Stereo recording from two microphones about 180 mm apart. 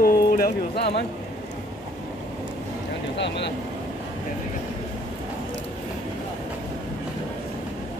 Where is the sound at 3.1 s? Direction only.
75° left (ahead or behind).